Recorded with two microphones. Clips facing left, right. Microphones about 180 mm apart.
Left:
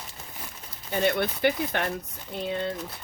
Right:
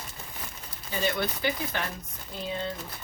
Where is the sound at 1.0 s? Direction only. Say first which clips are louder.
Left 5 dB; 60° left (ahead or behind).